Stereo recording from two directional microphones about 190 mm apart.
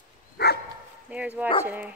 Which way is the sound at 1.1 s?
10° right (ahead or behind).